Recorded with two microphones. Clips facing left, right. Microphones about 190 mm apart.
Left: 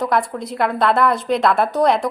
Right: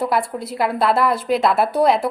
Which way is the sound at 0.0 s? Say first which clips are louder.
Left 1 dB; 5° right (ahead or behind).